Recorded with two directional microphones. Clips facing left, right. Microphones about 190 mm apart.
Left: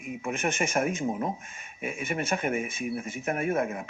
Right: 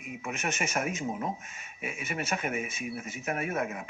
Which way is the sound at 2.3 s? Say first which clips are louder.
Left 3 dB; 30° left (ahead or behind).